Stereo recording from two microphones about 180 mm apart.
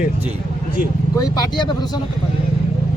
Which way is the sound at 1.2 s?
25° left (ahead or behind).